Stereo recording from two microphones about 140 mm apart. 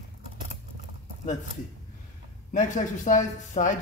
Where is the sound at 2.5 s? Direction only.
60° left (ahead or behind).